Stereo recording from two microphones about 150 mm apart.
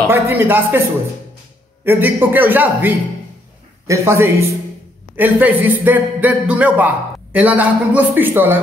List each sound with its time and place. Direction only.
0.1 s a man's voice: 15° right (ahead or behind)
1.9 s a man's voice: 15° right (ahead or behind)